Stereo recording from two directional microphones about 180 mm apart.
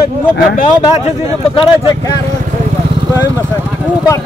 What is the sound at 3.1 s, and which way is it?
Speech, 15° left (ahead or behind).